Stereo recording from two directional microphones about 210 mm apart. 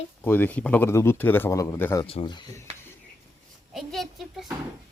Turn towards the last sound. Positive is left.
turn(degrees=0)  # may be behind; listen again after turning